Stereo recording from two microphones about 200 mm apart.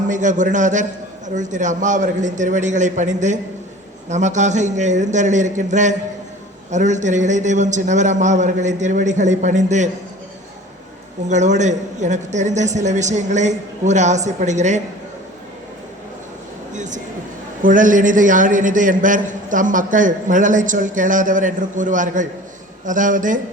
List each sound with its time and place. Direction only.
0.1 s a man's voice: 40° right (ahead or behind)
11.3 s a man's voice: 35° right (ahead or behind)
16.7 s a sound: 40° right (ahead or behind)
17.6 s a man's voice: 40° right (ahead or behind)